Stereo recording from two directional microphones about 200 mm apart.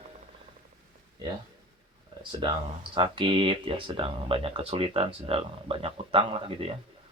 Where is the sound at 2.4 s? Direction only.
25° right (ahead or behind).